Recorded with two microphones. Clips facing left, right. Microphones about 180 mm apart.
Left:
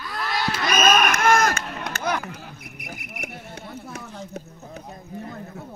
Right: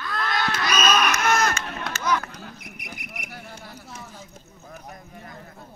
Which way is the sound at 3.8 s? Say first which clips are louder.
Left 5 dB; 70° left (ahead or behind).